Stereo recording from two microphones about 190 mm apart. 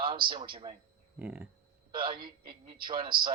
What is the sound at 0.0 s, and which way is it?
Speech, 25° right (ahead or behind).